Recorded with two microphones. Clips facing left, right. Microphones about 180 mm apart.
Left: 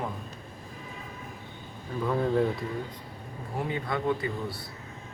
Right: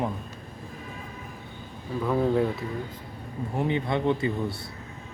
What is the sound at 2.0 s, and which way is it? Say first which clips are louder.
Speech: right 2 dB; 5° right (ahead or behind).